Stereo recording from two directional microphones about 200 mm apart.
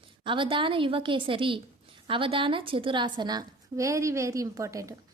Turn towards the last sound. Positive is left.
turn(degrees=-15)  # may be behind; listen again after turning